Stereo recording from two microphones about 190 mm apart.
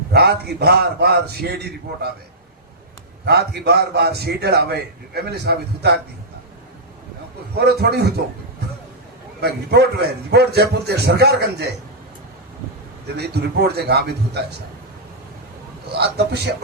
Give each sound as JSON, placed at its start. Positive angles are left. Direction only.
{"t": 0.1, "sound": "a man's voice", "side_deg": -55}
{"t": 3.2, "sound": "a man's voice", "side_deg": -60}
{"t": 7.6, "sound": "a man's voice", "side_deg": -55}
{"t": 9.4, "sound": "a man's voice", "side_deg": -60}
{"t": 13.1, "sound": "a man's voice", "side_deg": -60}
{"t": 15.9, "sound": "a man's voice", "side_deg": -60}